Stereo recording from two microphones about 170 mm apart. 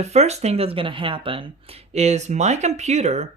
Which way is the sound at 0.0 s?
40° right (ahead or behind).